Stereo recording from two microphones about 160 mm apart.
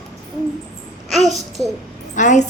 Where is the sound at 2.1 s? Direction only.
50° left (ahead or behind).